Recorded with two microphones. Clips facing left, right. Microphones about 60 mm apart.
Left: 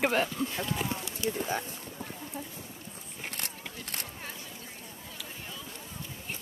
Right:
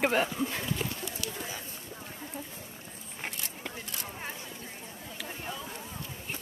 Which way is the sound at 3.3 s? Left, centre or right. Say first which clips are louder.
Right 1 dB; left.